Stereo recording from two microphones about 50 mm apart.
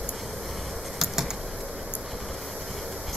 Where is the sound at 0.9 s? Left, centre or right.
Centre.